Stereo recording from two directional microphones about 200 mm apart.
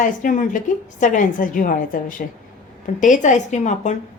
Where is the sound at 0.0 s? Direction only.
40° left (ahead or behind).